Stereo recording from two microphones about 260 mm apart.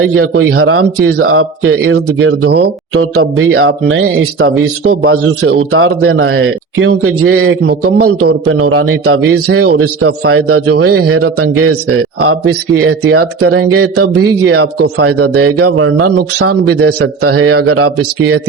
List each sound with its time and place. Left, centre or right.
0.0 s speech: right
2.5 s speech: right
3.0 s speech: right